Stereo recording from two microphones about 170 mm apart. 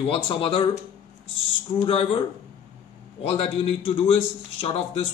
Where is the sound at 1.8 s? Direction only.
35° left (ahead or behind).